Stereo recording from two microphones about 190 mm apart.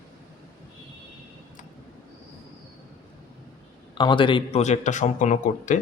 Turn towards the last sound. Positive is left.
turn(degrees=40)  # may be behind; listen again after turning